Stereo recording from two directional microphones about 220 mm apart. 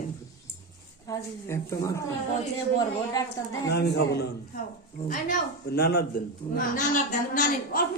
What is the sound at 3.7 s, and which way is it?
Speech, 50° left (ahead or behind).